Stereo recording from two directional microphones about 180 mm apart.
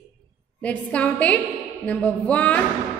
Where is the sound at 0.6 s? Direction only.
10° left (ahead or behind).